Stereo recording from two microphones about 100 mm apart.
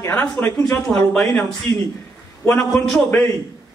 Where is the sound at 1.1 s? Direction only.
5° left (ahead or behind).